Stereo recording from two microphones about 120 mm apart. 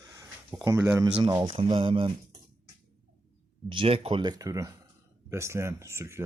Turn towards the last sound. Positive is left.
turn(degrees=-20)  # may be behind; listen again after turning